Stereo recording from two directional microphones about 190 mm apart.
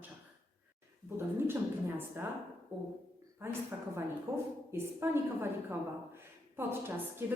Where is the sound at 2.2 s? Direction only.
10° right (ahead or behind).